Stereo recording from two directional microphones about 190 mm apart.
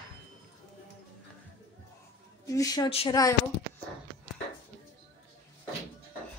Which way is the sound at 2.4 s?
20° left (ahead or behind).